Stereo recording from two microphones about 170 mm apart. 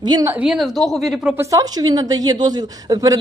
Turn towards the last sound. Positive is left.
turn(degrees=-20)  # may be behind; listen again after turning